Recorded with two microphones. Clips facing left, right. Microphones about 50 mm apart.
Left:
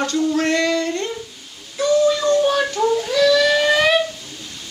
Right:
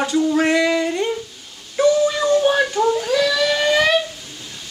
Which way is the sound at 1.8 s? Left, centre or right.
Centre.